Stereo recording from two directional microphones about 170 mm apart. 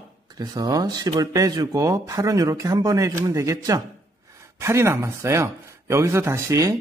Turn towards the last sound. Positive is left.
turn(degrees=-20)  # may be behind; listen again after turning